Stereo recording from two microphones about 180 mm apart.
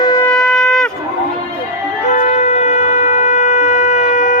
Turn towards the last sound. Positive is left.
turn(degrees=45)  # may be behind; listen again after turning